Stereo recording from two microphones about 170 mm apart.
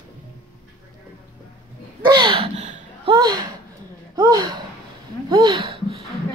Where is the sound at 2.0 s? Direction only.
25° right (ahead or behind).